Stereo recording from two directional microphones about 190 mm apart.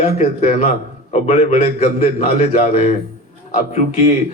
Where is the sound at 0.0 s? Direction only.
35° left (ahead or behind).